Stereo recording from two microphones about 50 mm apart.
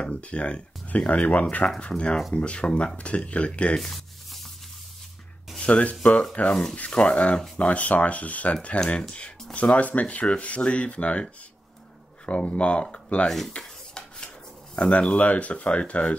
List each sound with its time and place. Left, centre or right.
0.1 s speech: left
3.7 s a sound: centre
5.6 s speech: left
6.4 s speech: centre
6.7 s speech: left
8.8 s speech: centre
12.3 s speech: left
13.5 s rub: centre
14.8 s speech: left